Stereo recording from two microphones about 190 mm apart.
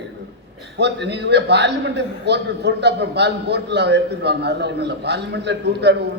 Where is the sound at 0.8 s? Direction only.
65° right (ahead or behind).